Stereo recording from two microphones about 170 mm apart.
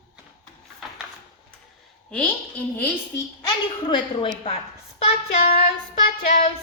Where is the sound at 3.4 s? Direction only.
30° left (ahead or behind).